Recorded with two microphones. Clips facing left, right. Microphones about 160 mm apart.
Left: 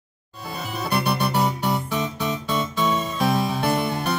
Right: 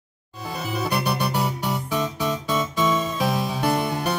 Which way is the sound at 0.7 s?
10° right (ahead or behind).